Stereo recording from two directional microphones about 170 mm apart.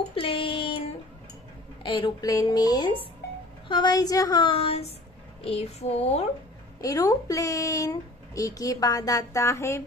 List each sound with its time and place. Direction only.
0.1 s a sound: 30° left (ahead or behind)
1.8 s speech: 30° left (ahead or behind)
6.8 s speech: 20° left (ahead or behind)